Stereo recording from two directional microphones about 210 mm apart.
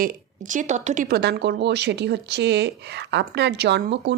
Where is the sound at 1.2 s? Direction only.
55° right (ahead or behind).